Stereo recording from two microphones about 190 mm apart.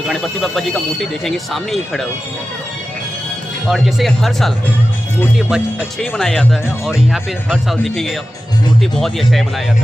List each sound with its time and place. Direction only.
0.0 s speech: centre (ahead or behind)
3.6 s speech: centre (ahead or behind)